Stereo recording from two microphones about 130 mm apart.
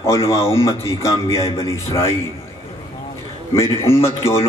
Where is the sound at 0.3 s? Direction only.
20° left (ahead or behind).